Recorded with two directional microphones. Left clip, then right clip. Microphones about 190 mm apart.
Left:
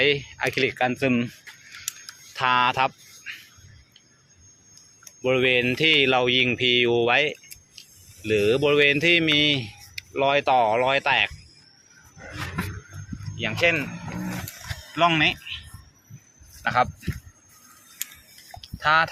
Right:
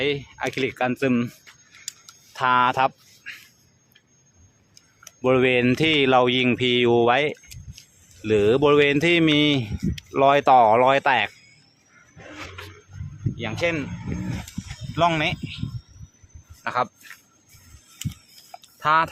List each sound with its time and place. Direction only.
0.0 s speech: 15° right (ahead or behind)
2.3 s speech: 15° right (ahead or behind)
5.2 s speech: 25° right (ahead or behind)
13.3 s speech: 15° right (ahead or behind)
14.9 s speech: 20° right (ahead or behind)
16.6 s speech: 15° right (ahead or behind)
18.8 s speech: 20° right (ahead or behind)